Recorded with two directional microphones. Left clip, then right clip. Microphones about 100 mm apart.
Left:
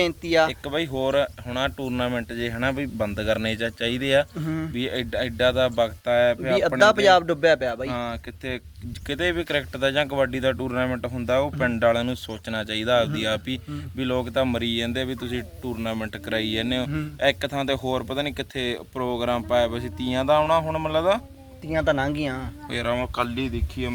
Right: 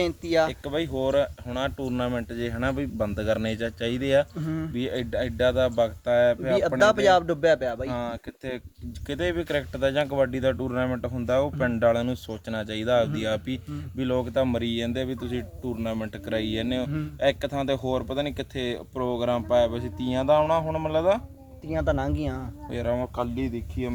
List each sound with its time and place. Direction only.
0.0 s speech: 10° left (ahead or behind)
0.6 s speech: 35° right (ahead or behind)
6.5 s speech: 10° left (ahead or behind)
7.9 s speech: 75° right (ahead or behind)
9.0 s speech: 40° right (ahead or behind)
21.7 s speech: 10° left (ahead or behind)
22.7 s speech: 40° right (ahead or behind)